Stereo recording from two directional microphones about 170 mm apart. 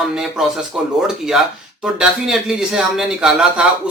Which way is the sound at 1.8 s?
5° right (ahead or behind).